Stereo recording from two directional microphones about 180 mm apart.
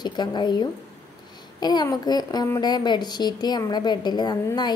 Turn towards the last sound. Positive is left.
turn(degrees=25)  # may be behind; listen again after turning